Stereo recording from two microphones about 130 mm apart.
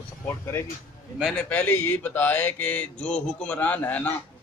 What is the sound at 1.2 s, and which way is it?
A man's voice, 10° left (ahead or behind).